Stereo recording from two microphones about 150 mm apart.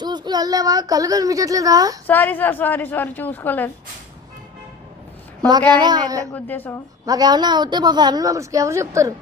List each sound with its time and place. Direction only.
0.0 s a woman's voice: 30° right (ahead or behind)
2.0 s a woman's voice: 10° left (ahead or behind)
5.5 s a woman's voice: 30° right (ahead or behind)
6.3 s a woman's voice: 10° left (ahead or behind)
7.0 s a woman's voice: 25° right (ahead or behind)